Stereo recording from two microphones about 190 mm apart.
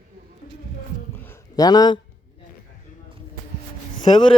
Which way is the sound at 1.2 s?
15° left (ahead or behind).